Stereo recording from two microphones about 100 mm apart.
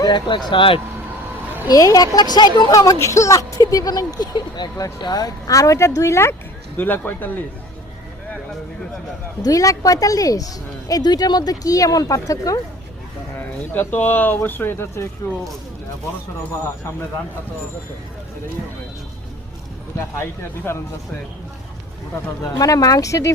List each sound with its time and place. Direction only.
0.0 s speech: 50° left (ahead or behind)
1.6 s a woman's voice: 35° left (ahead or behind); by 7.3 s 20° left (ahead or behind)
9.4 s a woman's voice: 35° left (ahead or behind)
13.7 s speech: 20° left (ahead or behind)
20.7 s speech: 25° left (ahead or behind)
22.5 s a woman's voice: 35° left (ahead or behind)